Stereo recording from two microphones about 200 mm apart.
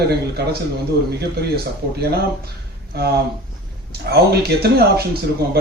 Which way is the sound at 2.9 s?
50° right (ahead or behind).